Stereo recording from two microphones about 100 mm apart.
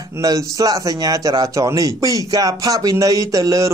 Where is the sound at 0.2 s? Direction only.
35° right (ahead or behind).